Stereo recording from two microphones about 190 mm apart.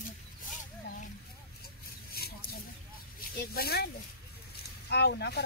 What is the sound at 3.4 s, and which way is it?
Speech, 55° left (ahead or behind).